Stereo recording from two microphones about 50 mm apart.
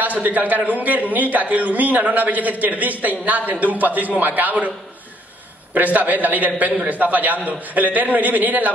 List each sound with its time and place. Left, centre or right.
0.0 s a man's voice: right
5.8 s a man's voice: right